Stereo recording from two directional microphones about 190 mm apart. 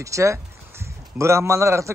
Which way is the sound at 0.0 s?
15° right (ahead or behind).